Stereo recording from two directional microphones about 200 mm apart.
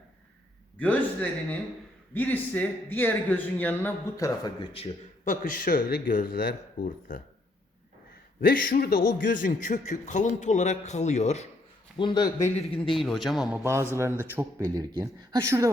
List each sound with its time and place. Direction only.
0.8 s a man's voice: 5° left (ahead or behind)
5.2 s speech: 45° left (ahead or behind)
8.4 s a man's voice: 45° left (ahead or behind)
11.9 s speech: 25° left (ahead or behind)
12.7 s speech: centre (ahead or behind)
13.6 s speech: 15° right (ahead or behind)